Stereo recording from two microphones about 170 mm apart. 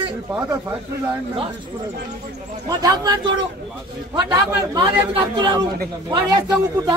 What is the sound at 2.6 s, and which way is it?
A man's voice, 25° right (ahead or behind).